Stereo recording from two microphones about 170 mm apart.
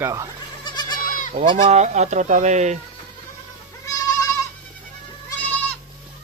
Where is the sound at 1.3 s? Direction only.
40° right (ahead or behind).